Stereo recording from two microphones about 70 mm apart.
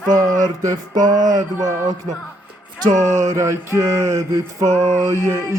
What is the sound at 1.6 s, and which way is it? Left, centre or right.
Music, right.